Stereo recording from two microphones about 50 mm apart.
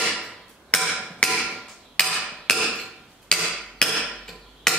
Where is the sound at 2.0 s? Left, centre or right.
Centre.